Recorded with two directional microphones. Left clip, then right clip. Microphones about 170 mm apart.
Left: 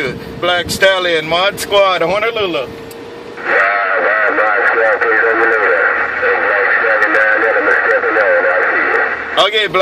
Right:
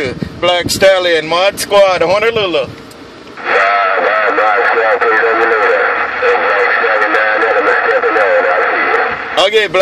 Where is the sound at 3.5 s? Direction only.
50° right (ahead or behind).